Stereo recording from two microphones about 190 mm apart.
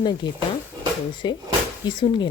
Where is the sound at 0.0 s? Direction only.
25° left (ahead or behind).